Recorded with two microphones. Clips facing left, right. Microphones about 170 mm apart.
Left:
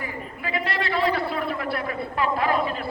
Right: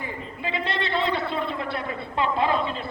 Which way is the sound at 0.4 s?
25° right (ahead or behind).